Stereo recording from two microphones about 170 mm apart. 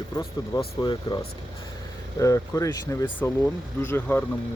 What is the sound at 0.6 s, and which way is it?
Speech, 30° left (ahead or behind).